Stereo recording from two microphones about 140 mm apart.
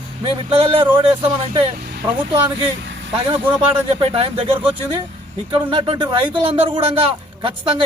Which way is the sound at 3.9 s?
40° right (ahead or behind).